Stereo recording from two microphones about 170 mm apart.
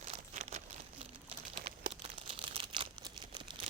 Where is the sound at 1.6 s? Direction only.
55° right (ahead or behind).